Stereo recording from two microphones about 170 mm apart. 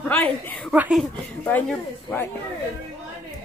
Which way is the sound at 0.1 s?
10° left (ahead or behind).